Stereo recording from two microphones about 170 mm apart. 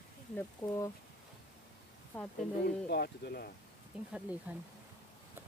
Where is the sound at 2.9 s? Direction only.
65° left (ahead or behind).